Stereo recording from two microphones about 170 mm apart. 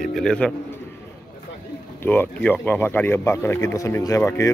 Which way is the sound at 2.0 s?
10° left (ahead or behind).